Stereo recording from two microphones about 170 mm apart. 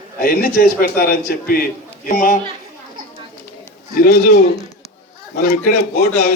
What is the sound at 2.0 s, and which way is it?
Speech, 50° left (ahead or behind).